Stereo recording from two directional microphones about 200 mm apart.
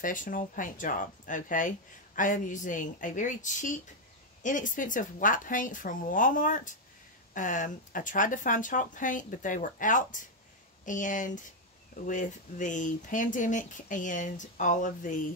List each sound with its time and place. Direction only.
0.0 s speech: 40° left (ahead or behind)